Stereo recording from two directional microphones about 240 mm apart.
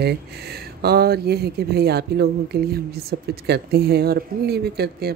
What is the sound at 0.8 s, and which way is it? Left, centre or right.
Speech, right.